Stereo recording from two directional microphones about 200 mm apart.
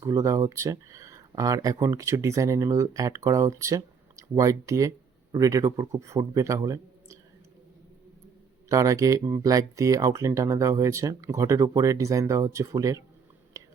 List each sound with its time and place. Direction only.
0.0 s speech: 15° right (ahead or behind)
8.7 s speech: 15° right (ahead or behind)
13.5 s whispering: 15° right (ahead or behind)